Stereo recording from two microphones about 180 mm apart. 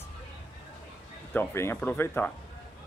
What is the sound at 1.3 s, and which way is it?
Speech, 15° left (ahead or behind).